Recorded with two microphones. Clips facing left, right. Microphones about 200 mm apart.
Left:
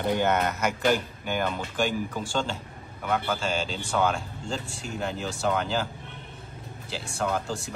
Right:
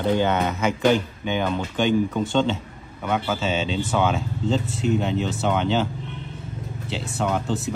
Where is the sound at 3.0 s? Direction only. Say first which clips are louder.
Right 3 dB; centre (ahead or behind).